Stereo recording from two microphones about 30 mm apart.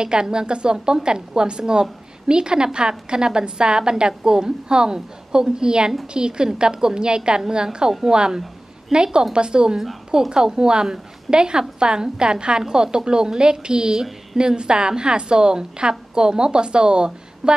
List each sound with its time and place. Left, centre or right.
0.0 s a woman's voice: right
8.9 s a woman's voice: right